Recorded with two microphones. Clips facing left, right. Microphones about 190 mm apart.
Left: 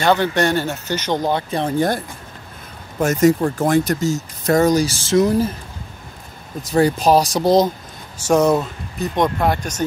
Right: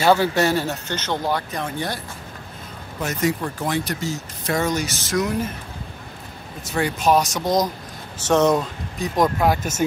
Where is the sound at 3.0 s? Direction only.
45° left (ahead or behind); by 5.5 s 30° left (ahead or behind).